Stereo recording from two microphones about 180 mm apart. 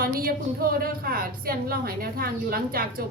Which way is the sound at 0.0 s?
55° right (ahead or behind).